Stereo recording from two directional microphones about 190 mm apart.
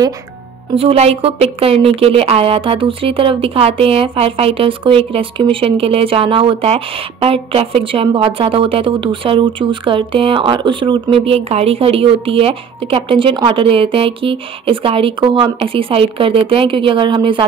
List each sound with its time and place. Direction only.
0.7 s a woman's voice: 30° right (ahead or behind)